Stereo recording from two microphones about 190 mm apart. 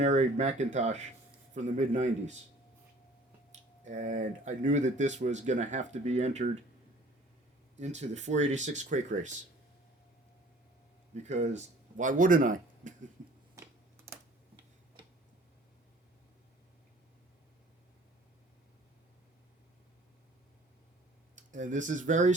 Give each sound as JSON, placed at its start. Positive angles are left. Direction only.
{"t": 0.0, "sound": "speech", "side_deg": -40}
{"t": 3.8, "sound": "speech", "side_deg": -40}
{"t": 7.8, "sound": "speech", "side_deg": -35}
{"t": 11.1, "sound": "speech", "side_deg": -35}
{"t": 13.6, "sound": "typing", "side_deg": -15}
{"t": 21.5, "sound": "speech", "side_deg": -40}